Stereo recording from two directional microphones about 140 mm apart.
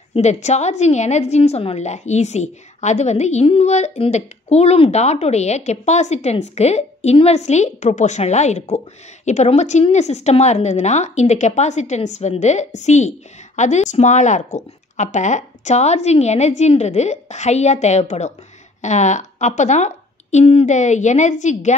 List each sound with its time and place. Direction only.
0.1 s a woman's voice: 55° left (ahead or behind)